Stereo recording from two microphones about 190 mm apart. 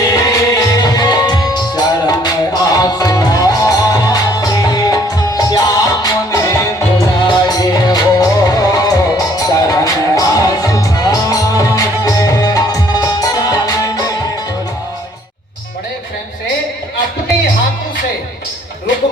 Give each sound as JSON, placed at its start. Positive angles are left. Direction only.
{"t": 0.1, "sound": "music", "side_deg": 20}